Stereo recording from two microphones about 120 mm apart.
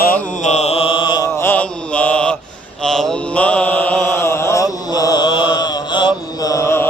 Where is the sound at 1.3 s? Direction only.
20° left (ahead or behind); by 6.1 s 40° left (ahead or behind).